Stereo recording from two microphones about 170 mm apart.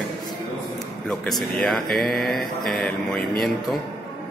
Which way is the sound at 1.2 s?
Centre (ahead or behind).